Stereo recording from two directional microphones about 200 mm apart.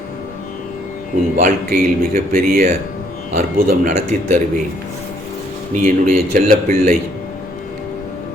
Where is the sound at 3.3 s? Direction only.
35° right (ahead or behind).